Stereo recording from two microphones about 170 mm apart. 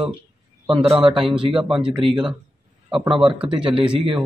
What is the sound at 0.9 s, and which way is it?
Speech, 30° right (ahead or behind).